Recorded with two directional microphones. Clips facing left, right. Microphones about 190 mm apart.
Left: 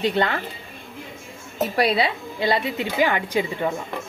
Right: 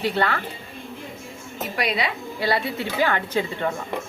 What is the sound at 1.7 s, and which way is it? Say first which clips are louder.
A woman's voice: left 4 dB; 30° left (ahead or behind).